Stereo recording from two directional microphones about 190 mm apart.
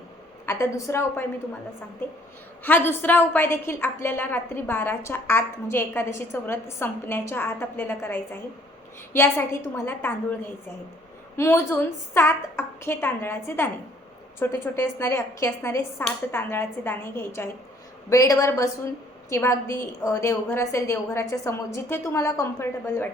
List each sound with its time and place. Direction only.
0.4 s a woman's voice: 15° left (ahead or behind)
2.6 s a woman's voice: 10° left (ahead or behind)
11.3 s a woman's voice: 15° left (ahead or behind)